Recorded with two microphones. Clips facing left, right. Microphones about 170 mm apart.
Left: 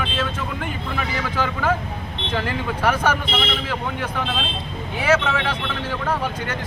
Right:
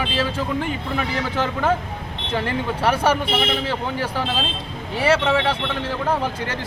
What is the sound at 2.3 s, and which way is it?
Speech, 30° right (ahead or behind).